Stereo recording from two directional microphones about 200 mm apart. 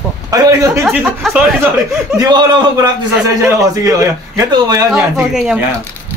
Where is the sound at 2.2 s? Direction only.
20° right (ahead or behind).